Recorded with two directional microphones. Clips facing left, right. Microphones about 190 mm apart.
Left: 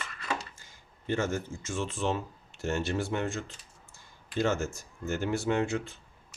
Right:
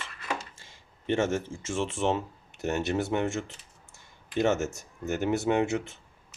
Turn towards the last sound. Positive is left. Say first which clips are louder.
# right 3 dB
turn(degrees=-20)  # may be behind; listen again after turning